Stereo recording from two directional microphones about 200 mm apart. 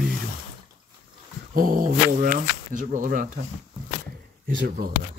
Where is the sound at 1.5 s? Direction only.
45° right (ahead or behind).